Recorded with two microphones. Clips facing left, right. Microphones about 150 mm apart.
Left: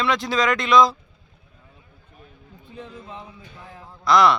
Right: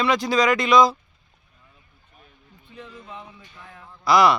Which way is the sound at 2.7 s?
35° left (ahead or behind).